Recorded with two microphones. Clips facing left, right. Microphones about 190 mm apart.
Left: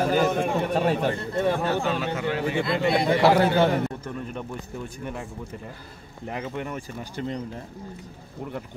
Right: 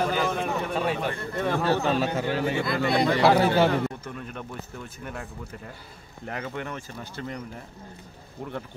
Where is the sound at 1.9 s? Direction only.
30° right (ahead or behind).